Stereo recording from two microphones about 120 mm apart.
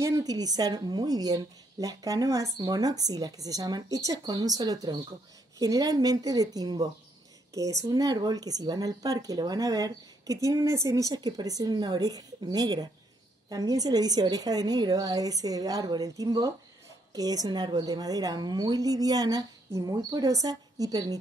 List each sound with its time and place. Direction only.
0.0 s speech: 30° right (ahead or behind)